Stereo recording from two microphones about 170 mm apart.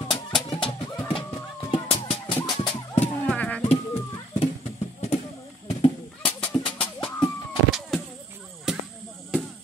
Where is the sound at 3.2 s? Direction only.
10° left (ahead or behind).